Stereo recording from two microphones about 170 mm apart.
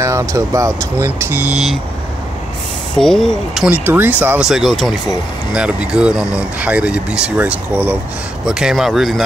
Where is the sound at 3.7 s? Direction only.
10° right (ahead or behind).